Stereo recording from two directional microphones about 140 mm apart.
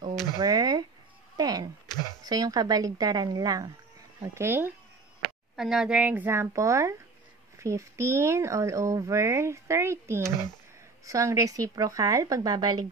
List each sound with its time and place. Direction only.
0.4 s speech: 25° right (ahead or behind)
1.3 s a sound: 30° right (ahead or behind)
2.2 s a woman's voice: 30° right (ahead or behind)
5.6 s a woman's voice: 5° right (ahead or behind); by 12.8 s 30° right (ahead or behind)